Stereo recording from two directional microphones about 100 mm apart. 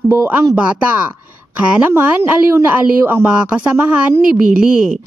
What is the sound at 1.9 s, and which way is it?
Speech, 25° right (ahead or behind).